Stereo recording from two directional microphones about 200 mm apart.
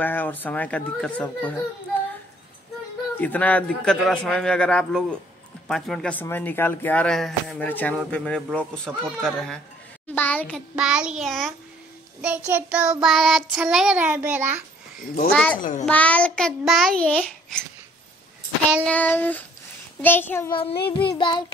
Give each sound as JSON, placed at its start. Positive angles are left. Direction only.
{"t": 0.0, "sound": "speech", "side_deg": 10}
{"t": 3.2, "sound": "child singing", "side_deg": 10}
{"t": 5.7, "sound": "speech", "side_deg": 0}
{"t": 8.0, "sound": "child singing", "side_deg": 5}
{"t": 10.0, "sound": "a child's voice", "side_deg": 10}
{"t": 10.8, "sound": "child singing", "side_deg": -5}
{"t": 15.3, "sound": "speech", "side_deg": 5}
{"t": 15.8, "sound": "child singing", "side_deg": 5}
{"t": 18.9, "sound": "speech", "side_deg": 10}
{"t": 20.5, "sound": "child singing", "side_deg": 25}